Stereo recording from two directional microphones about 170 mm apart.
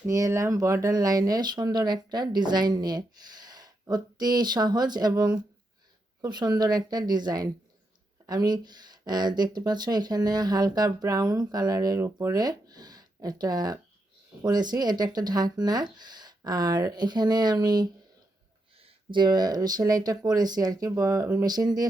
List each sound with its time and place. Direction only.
0.1 s speech: 20° right (ahead or behind)